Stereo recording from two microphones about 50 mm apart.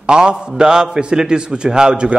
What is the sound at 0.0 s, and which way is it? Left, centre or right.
A man's voice, centre.